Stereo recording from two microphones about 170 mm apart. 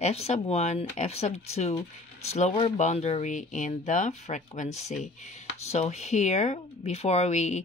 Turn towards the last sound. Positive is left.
turn(degrees=40)  # may be behind; listen again after turning